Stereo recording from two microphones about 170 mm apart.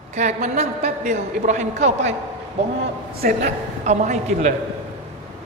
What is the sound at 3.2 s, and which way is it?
Speech, 60° right (ahead or behind).